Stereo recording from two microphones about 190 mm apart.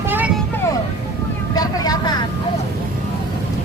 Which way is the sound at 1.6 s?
20° left (ahead or behind).